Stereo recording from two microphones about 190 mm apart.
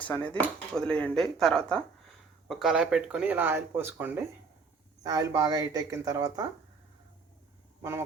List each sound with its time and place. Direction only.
0.0 s speech: 5° left (ahead or behind); by 6.4 s 20° right (ahead or behind)
7.8 s speech: 15° right (ahead or behind)